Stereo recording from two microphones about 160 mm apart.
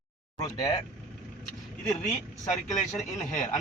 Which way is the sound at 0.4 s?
25° left (ahead or behind).